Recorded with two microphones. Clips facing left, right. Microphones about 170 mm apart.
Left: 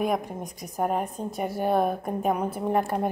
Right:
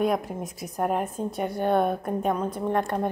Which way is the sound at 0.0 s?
Centre (ahead or behind).